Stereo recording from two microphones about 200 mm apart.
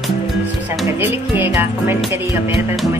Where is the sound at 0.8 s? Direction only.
10° right (ahead or behind).